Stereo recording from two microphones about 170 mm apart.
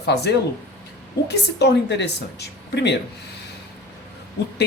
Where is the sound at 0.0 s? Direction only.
80° left.